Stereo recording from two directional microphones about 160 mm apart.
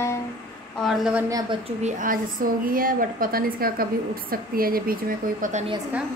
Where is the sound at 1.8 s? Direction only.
60° right (ahead or behind).